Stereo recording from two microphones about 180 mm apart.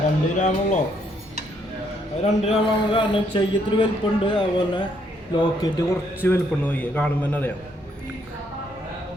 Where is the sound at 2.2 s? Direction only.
30° left (ahead or behind).